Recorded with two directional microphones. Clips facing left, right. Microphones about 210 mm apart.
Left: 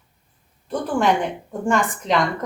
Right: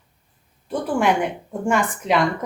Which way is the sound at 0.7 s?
10° right (ahead or behind).